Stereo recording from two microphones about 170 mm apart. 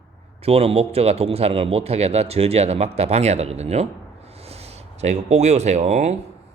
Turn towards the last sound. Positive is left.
turn(degrees=-40)  # may be behind; listen again after turning